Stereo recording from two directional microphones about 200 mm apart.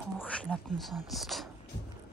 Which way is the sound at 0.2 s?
5° left (ahead or behind).